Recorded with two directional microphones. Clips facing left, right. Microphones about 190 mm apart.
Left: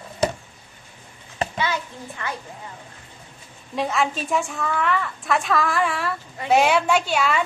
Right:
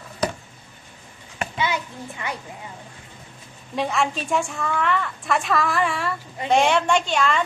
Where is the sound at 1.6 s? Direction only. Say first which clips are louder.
Right 5 dB; 15° right (ahead or behind).